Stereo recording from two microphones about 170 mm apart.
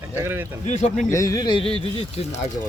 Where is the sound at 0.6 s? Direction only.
45° left (ahead or behind).